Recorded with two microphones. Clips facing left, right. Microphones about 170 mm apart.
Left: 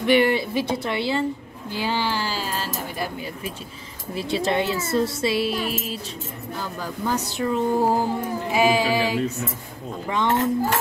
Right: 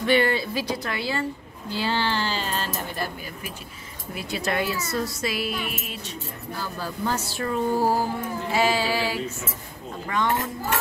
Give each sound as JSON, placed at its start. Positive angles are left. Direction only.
{"t": 0.0, "sound": "a woman's voice", "side_deg": 15}
{"t": 1.7, "sound": "speech", "side_deg": 15}
{"t": 4.1, "sound": "a woman's voice", "side_deg": 30}
{"t": 6.8, "sound": "a woman's voice", "side_deg": 15}